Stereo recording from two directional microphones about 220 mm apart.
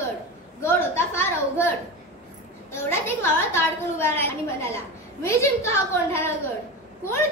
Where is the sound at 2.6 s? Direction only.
10° left (ahead or behind).